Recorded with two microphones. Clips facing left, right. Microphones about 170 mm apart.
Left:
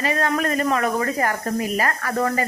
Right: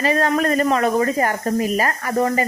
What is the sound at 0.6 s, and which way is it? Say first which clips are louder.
Speech: right 4 dB; 25° right (ahead or behind).